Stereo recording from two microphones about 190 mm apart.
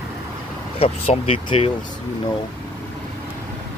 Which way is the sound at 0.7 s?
30° left (ahead or behind).